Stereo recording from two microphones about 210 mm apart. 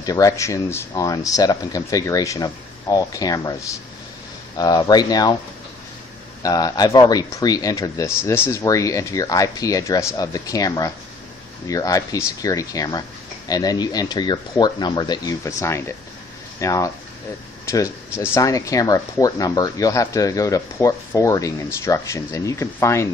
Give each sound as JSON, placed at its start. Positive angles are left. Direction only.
{"t": 0.0, "sound": "speech", "side_deg": 15}
{"t": 6.4, "sound": "speech", "side_deg": 15}
{"t": 18.2, "sound": "speech", "side_deg": 15}